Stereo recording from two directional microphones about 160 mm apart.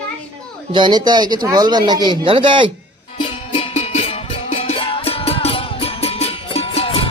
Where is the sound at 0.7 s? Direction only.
30° right (ahead or behind).